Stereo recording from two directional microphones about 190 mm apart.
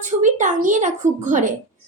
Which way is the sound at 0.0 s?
40° right (ahead or behind).